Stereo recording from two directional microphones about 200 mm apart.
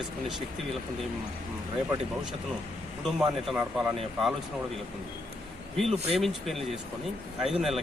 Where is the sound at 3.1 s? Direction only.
Centre (ahead or behind).